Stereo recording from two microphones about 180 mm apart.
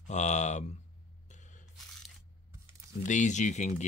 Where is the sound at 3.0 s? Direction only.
45° left (ahead or behind).